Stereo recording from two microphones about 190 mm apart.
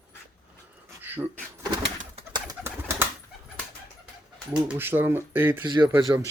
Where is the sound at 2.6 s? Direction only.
10° right (ahead or behind).